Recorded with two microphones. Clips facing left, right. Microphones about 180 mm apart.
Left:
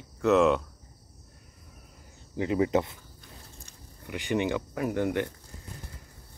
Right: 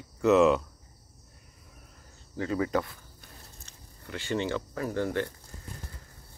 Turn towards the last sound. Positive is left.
turn(degrees=15)  # may be behind; listen again after turning